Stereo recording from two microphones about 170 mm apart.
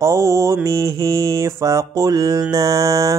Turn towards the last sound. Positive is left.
turn(degrees=-20)  # may be behind; listen again after turning